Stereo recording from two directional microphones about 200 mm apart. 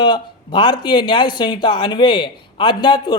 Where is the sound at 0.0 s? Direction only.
25° left (ahead or behind).